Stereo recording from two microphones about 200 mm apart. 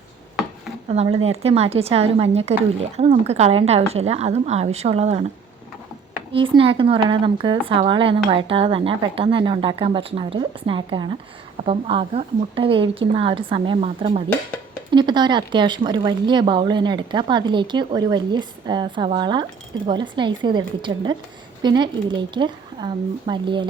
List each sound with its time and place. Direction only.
0.9 s a woman's voice: 30° right (ahead or behind)
6.3 s speech: 25° right (ahead or behind)